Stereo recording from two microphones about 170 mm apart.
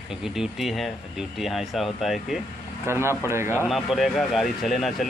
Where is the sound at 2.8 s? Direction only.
15° right (ahead or behind).